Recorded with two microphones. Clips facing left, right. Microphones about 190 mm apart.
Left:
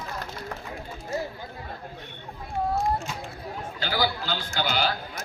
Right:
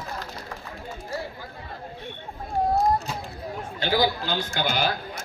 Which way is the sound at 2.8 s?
40° right (ahead or behind).